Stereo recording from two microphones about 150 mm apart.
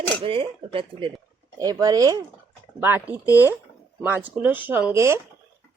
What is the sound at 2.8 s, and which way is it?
Speech, 15° right (ahead or behind).